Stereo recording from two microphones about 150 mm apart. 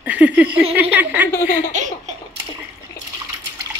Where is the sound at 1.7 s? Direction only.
55° right (ahead or behind).